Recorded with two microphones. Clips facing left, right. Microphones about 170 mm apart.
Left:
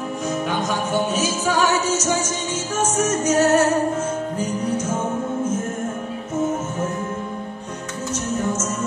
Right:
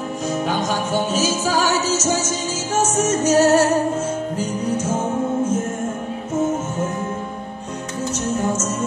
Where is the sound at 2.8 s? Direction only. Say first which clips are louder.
Right 2 dB; 30° right (ahead or behind).